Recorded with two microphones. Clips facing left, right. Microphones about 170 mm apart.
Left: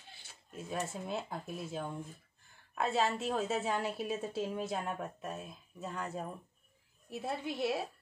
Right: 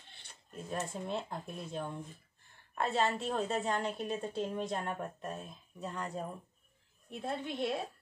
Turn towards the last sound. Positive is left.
turn(degrees=5)  # may be behind; listen again after turning